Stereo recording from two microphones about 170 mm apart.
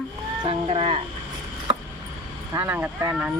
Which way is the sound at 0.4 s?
35° right (ahead or behind).